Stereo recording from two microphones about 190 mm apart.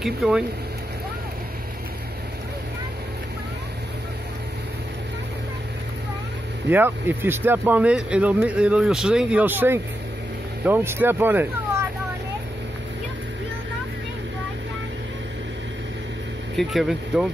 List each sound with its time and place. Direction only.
0.0 s speech: centre (ahead or behind)
6.7 s speech: 10° right (ahead or behind)
16.5 s speech: centre (ahead or behind)